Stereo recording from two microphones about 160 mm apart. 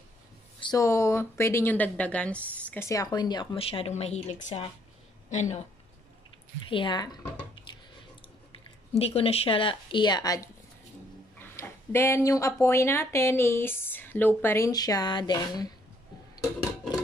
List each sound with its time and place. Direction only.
0.6 s speech: 25° left (ahead or behind); by 5.7 s 45° left (ahead or behind)
6.6 s speech: 30° left (ahead or behind)
8.9 s speech: 40° left (ahead or behind)